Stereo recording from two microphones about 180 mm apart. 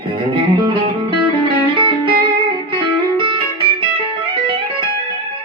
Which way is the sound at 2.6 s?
25° right (ahead or behind).